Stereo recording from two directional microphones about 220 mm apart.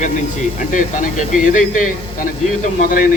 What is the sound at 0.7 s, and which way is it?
Speech, 35° left (ahead or behind).